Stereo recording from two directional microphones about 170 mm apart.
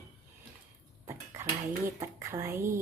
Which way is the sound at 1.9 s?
15° right (ahead or behind).